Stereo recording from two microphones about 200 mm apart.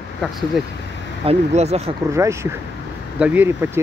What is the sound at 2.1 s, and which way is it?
Speech, 15° right (ahead or behind).